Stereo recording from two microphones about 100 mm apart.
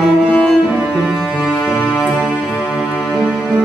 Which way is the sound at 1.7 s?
20° left (ahead or behind).